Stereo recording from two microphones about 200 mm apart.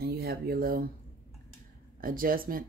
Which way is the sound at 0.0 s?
50° right (ahead or behind).